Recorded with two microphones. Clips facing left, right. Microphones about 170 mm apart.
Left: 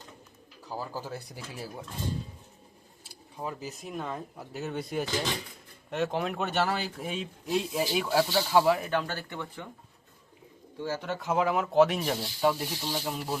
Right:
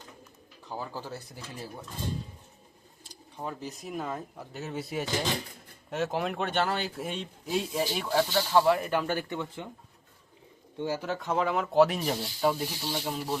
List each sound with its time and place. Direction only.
0.6 s speech: 5° left (ahead or behind)
3.0 s speech: 5° left (ahead or behind); by 9.6 s 20° right (ahead or behind)
10.8 s speech: 15° right (ahead or behind)
11.0 s speech: centre (ahead or behind)